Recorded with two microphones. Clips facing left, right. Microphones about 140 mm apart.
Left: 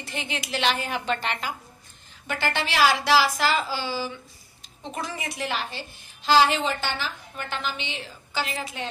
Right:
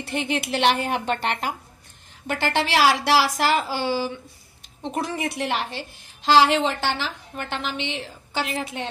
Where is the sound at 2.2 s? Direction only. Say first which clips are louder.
Right 4 dB; 75° right (ahead or behind).